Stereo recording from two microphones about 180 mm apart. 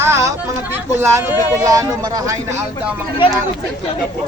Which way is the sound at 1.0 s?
15° right (ahead or behind).